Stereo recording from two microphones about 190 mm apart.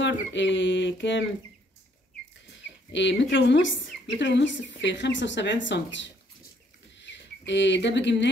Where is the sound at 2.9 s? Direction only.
70° left (ahead or behind).